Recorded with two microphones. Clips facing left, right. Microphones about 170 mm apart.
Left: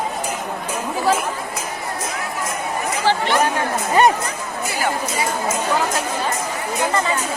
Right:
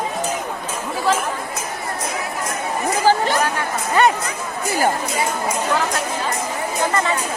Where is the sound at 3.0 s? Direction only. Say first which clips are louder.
Right 2 dB; 40° right (ahead or behind).